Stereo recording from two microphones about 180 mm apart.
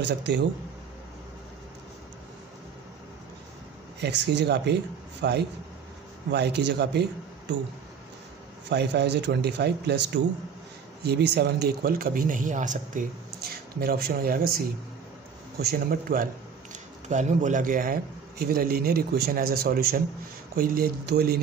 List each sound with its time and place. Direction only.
0.0 s speech: 75° right (ahead or behind)
4.0 s speech: 75° right (ahead or behind)
8.6 s a man's voice: 70° right (ahead or behind); by 14.6 s 55° right (ahead or behind)
15.6 s a man's voice: 55° right (ahead or behind)
17.1 s a man's voice: 40° right (ahead or behind); by 21.4 s 60° right (ahead or behind)